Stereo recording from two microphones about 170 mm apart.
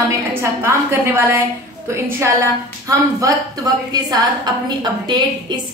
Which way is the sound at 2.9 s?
20° right (ahead or behind).